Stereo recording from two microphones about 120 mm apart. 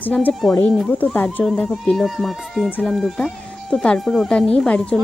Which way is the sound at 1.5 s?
Centre (ahead or behind).